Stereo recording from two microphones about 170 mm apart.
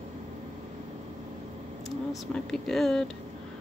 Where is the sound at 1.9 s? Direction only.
Centre (ahead or behind).